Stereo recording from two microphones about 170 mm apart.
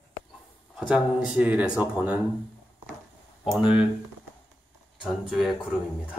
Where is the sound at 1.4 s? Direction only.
10° right (ahead or behind).